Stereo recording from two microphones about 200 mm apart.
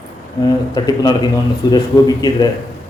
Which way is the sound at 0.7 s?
20° left (ahead or behind).